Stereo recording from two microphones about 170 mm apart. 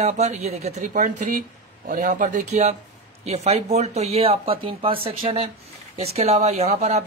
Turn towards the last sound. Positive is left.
turn(degrees=-40)  # may be behind; listen again after turning